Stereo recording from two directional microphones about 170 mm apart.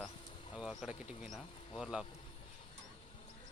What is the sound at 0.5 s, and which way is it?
Speech, centre (ahead or behind).